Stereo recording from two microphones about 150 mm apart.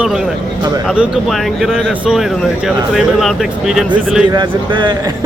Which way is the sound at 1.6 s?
Centre (ahead or behind).